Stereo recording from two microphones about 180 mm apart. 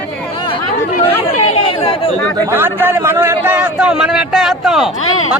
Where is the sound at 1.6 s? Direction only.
30° left (ahead or behind).